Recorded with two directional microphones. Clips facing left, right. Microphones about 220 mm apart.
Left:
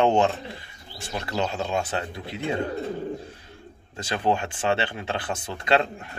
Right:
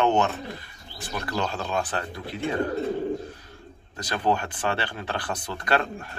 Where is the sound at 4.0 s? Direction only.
25° left (ahead or behind).